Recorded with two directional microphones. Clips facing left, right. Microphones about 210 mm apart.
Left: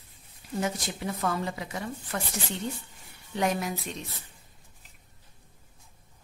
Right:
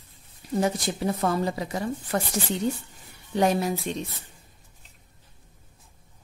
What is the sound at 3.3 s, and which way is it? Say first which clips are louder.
Speech: right 5 dB; 30° right (ahead or behind).